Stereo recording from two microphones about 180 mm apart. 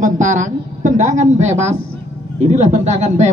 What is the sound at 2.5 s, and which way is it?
Speech, 40° right (ahead or behind).